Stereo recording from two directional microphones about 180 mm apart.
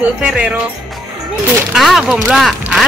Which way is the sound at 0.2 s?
5° right (ahead or behind).